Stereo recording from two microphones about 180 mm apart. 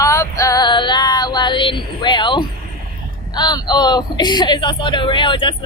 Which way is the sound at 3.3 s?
25° left (ahead or behind).